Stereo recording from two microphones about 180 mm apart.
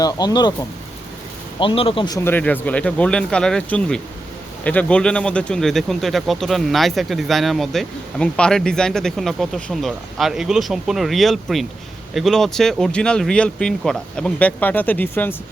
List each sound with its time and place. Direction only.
0.0 s speech: 20° left (ahead or behind)
1.5 s speech: 30° left (ahead or behind)
2.1 s speech: 10° left (ahead or behind)